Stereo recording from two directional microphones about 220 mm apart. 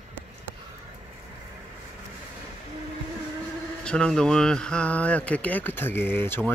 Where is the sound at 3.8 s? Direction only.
5° left (ahead or behind).